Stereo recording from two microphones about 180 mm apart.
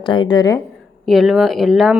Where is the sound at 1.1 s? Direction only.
Centre (ahead or behind).